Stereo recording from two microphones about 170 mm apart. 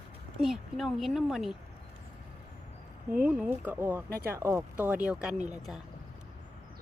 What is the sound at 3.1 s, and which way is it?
Speech, 10° right (ahead or behind).